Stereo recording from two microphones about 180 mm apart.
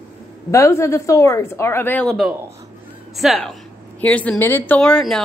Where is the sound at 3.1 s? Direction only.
Centre (ahead or behind).